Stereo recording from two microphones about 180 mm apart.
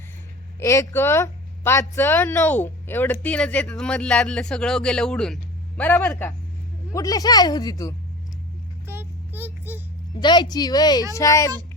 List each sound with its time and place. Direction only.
0.6 s speech: 15° left (ahead or behind)
8.9 s child singing: 10° right (ahead or behind)
10.2 s speech: 25° left (ahead or behind)